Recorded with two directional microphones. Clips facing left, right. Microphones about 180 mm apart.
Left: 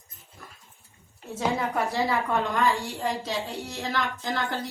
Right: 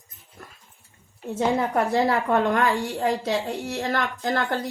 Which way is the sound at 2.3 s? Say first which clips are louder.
Right 3 dB; 55° right (ahead or behind).